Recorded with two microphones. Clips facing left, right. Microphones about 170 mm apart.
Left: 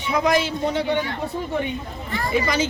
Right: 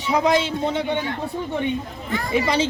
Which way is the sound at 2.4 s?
30° right (ahead or behind).